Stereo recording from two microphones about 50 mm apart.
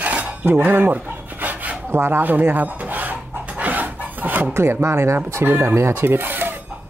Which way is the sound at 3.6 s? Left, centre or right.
Right.